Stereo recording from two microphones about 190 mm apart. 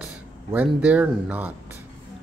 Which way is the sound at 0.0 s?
5° right (ahead or behind).